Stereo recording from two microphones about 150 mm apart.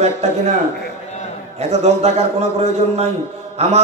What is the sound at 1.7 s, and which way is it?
Speech, 45° right (ahead or behind).